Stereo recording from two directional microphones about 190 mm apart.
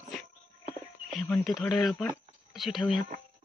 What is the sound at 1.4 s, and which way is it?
A man's voice, centre (ahead or behind).